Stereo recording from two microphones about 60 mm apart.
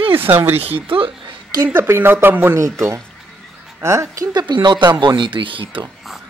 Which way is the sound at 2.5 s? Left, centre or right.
Right.